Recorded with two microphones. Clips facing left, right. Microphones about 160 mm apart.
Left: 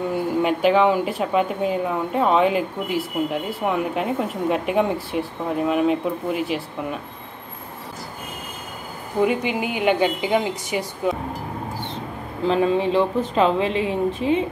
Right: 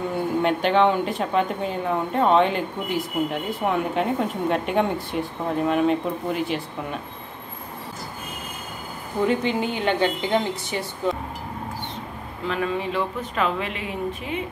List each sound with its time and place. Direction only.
0.1 s speech: 5° left (ahead or behind)
9.2 s speech: 10° left (ahead or behind)
12.4 s speech: 30° left (ahead or behind)